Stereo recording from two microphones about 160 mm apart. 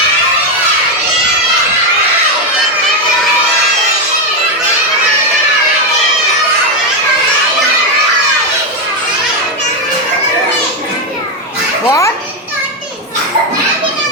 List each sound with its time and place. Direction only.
11.9 s children playing: 20° left (ahead or behind)